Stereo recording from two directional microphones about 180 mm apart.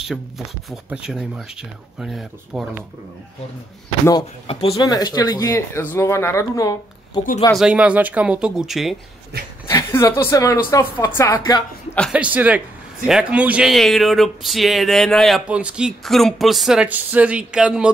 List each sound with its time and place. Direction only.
0.7 s a man's voice: 5° right (ahead or behind)
4.5 s speech: 35° left (ahead or behind)
4.7 s speech: 20° left (ahead or behind)
7.5 s a man's voice: 5° right (ahead or behind)
9.7 s speech: 15° left (ahead or behind)
12.1 s a man's voice: 5° right (ahead or behind)